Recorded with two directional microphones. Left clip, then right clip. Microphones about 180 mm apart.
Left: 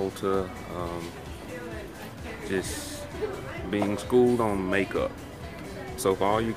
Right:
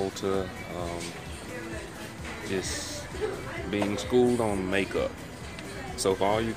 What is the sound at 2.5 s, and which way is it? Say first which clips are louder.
Speech: left 1 dB; 15° left (ahead or behind).